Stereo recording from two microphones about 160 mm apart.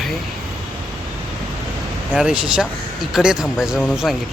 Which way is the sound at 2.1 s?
5° right (ahead or behind).